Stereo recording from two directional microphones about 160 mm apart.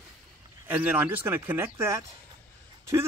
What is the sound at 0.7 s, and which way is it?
Speech, 10° right (ahead or behind).